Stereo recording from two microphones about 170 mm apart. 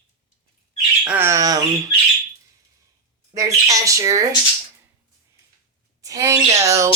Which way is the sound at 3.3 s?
20° right (ahead or behind).